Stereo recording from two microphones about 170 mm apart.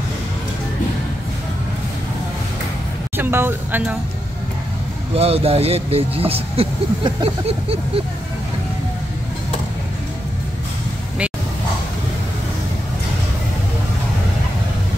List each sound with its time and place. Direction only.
3.2 s speech: 15° right (ahead or behind)
5.1 s speech: 35° right (ahead or behind)